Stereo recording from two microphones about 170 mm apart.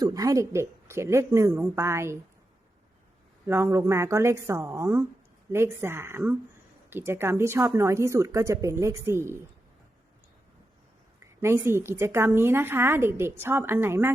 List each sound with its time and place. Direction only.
0.0 s speech: 20° right (ahead or behind)
3.4 s speech: 15° right (ahead or behind)
11.3 s speech: 15° right (ahead or behind)